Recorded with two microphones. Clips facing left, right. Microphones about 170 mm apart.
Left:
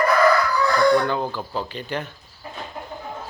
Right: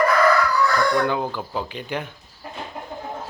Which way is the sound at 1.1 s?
10° right (ahead or behind).